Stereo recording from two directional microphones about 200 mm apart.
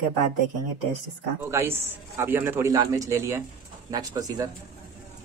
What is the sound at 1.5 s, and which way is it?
A man's voice, 15° right (ahead or behind).